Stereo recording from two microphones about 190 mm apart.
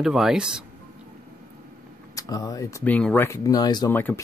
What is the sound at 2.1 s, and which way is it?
Speech, 20° left (ahead or behind).